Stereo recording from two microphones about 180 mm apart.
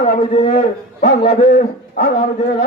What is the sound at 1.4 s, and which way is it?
Speech, 50° left (ahead or behind).